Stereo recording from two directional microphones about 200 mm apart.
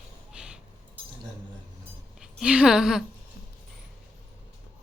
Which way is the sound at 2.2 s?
5° right (ahead or behind).